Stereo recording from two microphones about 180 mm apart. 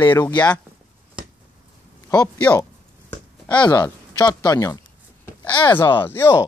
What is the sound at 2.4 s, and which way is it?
Speech, 10° left (ahead or behind).